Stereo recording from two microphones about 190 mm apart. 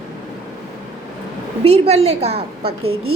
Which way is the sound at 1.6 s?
35° right (ahead or behind).